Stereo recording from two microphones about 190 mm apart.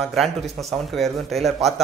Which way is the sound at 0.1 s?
Centre (ahead or behind).